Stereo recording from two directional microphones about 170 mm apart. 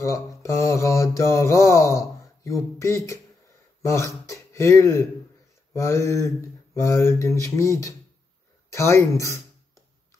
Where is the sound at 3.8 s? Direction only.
15° left (ahead or behind).